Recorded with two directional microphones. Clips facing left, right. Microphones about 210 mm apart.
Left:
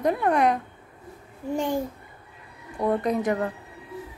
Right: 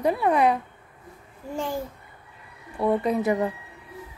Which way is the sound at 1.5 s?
15° left (ahead or behind).